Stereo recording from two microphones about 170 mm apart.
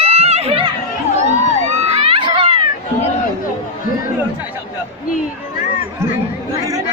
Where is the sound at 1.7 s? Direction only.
35° right (ahead or behind).